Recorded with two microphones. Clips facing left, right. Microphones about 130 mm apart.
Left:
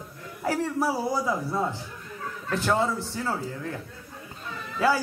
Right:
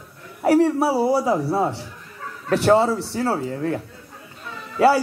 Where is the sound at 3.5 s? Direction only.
55° right (ahead or behind).